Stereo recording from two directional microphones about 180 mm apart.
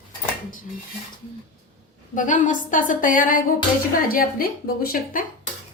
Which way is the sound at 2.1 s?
45° left (ahead or behind).